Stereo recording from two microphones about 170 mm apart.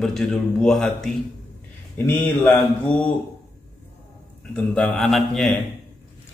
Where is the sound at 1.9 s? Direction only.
10° left (ahead or behind).